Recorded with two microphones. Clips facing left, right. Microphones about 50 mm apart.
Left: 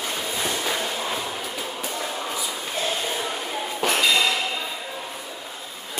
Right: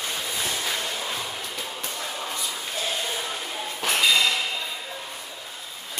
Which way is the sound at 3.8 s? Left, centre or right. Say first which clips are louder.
Left 1 dB; centre.